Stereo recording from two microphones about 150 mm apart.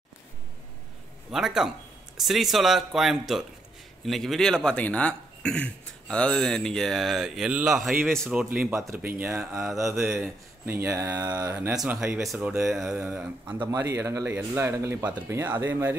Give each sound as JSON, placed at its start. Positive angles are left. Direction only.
{"t": 1.3, "sound": "speech", "side_deg": -5}
{"t": 8.5, "sound": "speech", "side_deg": -10}
{"t": 11.7, "sound": "speech", "side_deg": -5}
{"t": 13.6, "sound": "speech", "side_deg": -20}